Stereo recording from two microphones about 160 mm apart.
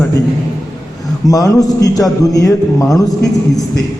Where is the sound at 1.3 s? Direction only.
20° left (ahead or behind).